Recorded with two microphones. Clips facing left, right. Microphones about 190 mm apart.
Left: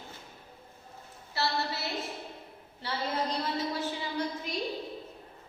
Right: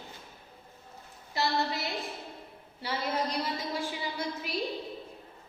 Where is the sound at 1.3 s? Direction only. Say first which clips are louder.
Right 2 dB; 15° right (ahead or behind).